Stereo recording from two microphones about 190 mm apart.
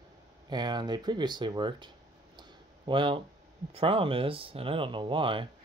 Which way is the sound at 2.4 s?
25° right (ahead or behind).